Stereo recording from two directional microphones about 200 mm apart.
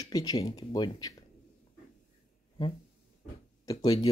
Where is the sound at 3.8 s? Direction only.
20° left (ahead or behind).